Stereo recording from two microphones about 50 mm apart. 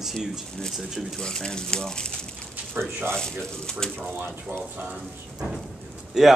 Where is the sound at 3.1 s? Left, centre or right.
Centre.